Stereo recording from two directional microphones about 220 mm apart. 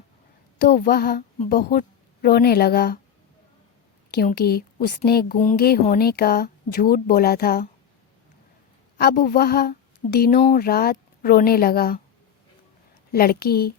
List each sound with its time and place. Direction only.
0.6 s speech: 45° left (ahead or behind)
4.1 s speech: 45° left (ahead or behind)
9.0 s a woman's voice: 40° left (ahead or behind)
13.1 s speech: 45° left (ahead or behind)